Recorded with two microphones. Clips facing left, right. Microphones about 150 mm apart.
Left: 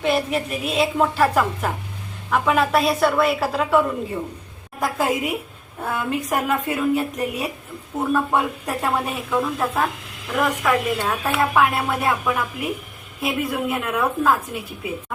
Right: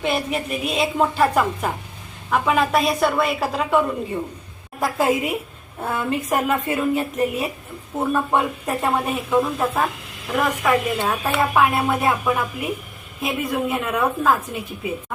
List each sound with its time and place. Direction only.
0.0 s a woman's voice: centre (ahead or behind)
8.8 s a woman's voice: 10° right (ahead or behind)